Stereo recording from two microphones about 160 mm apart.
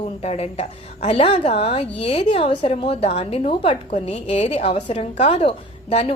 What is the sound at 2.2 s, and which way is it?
A woman's voice, 30° left (ahead or behind).